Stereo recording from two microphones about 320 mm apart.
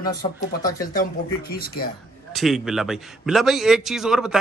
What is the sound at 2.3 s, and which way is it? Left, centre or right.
A man's voice, centre.